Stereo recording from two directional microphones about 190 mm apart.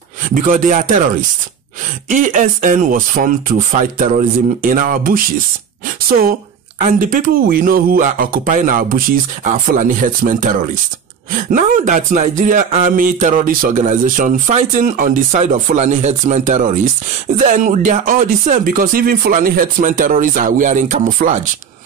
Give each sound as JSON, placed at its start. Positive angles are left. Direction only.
{"t": 0.3, "sound": "speech", "side_deg": -45}
{"t": 2.0, "sound": "speech", "side_deg": -45}
{"t": 6.8, "sound": "speech", "side_deg": -45}